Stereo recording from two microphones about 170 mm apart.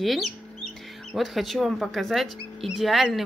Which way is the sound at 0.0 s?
Centre (ahead or behind).